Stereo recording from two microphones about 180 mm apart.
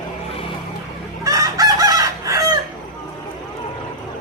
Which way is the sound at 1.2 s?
20° right (ahead or behind).